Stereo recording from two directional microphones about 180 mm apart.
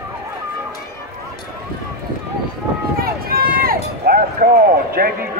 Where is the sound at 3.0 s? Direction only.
55° right (ahead or behind).